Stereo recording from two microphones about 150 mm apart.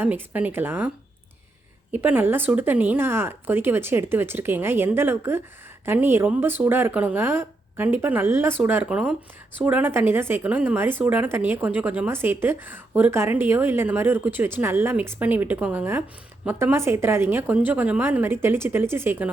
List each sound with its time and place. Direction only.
0.0 s speech: 10° right (ahead or behind)
1.9 s speech: 10° right (ahead or behind)